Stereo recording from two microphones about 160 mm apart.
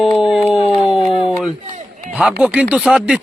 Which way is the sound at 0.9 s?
Centre (ahead or behind).